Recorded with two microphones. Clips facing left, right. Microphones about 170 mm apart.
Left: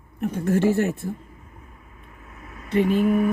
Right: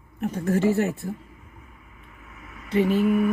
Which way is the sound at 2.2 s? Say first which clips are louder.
Left 2 dB; 35° left (ahead or behind).